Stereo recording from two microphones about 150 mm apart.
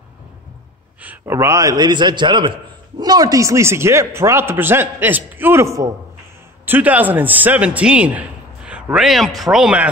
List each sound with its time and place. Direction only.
1.0 s a man's voice: 15° right (ahead or behind)